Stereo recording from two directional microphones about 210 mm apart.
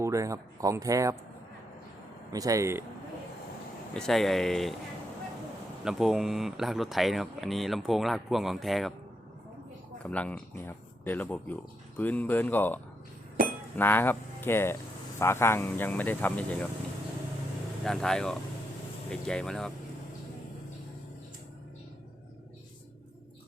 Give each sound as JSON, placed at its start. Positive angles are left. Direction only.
{"t": 0.0, "sound": "speech", "side_deg": -15}
{"t": 2.3, "sound": "speech", "side_deg": -15}
{"t": 3.9, "sound": "speech", "side_deg": 0}
{"t": 5.8, "sound": "speech", "side_deg": 0}
{"t": 10.0, "sound": "speech", "side_deg": 5}
{"t": 13.4, "sound": "chink", "side_deg": -40}
{"t": 13.7, "sound": "speech", "side_deg": 10}
{"t": 17.8, "sound": "speech", "side_deg": 0}